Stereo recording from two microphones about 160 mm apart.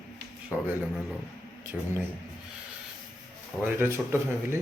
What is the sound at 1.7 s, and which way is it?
Speech, centre (ahead or behind).